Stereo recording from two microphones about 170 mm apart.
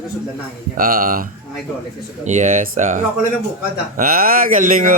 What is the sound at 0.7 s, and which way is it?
Speech, 55° right (ahead or behind).